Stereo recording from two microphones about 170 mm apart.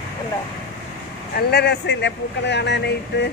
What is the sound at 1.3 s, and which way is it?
A man's voice, 75° left (ahead or behind).